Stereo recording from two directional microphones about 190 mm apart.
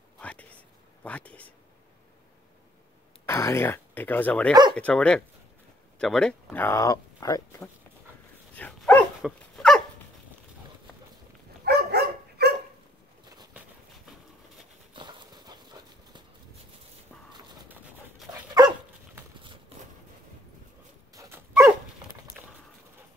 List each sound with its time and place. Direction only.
0.2 s whispering: 5° left (ahead or behind)
3.3 s speech: 15° left (ahead or behind)
8.5 s dog: 10° left (ahead or behind)
11.6 s dog: 55° right (ahead or behind)
15.0 s clip-clop: 25° right (ahead or behind)
18.6 s dog: 20° right (ahead or behind)
21.1 s dog: 15° right (ahead or behind)